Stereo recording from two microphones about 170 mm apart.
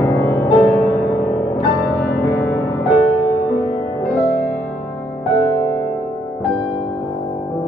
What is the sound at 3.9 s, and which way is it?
Music, 15° left (ahead or behind).